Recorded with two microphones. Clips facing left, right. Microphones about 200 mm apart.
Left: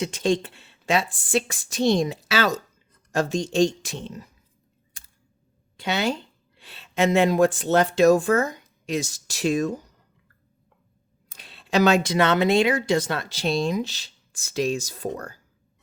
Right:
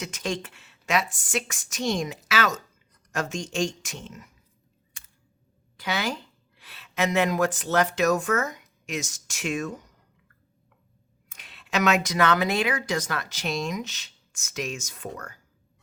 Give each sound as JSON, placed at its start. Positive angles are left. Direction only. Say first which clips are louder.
{"t": 0.0, "sound": "a woman's voice", "louder": "left 8 dB", "side_deg": 30}
{"t": 5.7, "sound": "speech", "louder": "left 4 dB", "side_deg": 25}
{"t": 11.3, "sound": "speech", "louder": "left 5 dB", "side_deg": 30}